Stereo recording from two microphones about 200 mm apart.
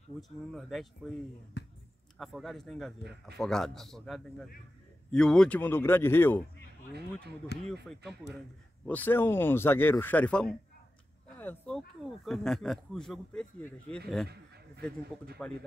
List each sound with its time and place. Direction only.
0.2 s a man's voice: centre (ahead or behind)
3.0 s speech: 55° right (ahead or behind)
3.3 s a man's voice: centre (ahead or behind)
6.9 s speech: 55° right (ahead or behind)
8.8 s a man's voice: 10° left (ahead or behind)
15.4 s a man's voice: 5° left (ahead or behind)